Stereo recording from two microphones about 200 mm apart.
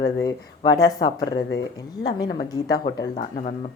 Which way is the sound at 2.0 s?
20° left (ahead or behind).